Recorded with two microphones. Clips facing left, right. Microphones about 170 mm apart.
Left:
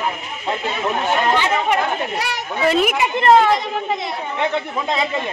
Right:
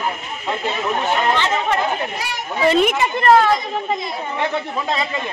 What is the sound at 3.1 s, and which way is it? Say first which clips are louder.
Speech: left 1 dB; 20° left (ahead or behind).